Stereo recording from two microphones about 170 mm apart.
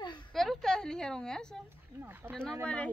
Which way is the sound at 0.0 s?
25° left (ahead or behind).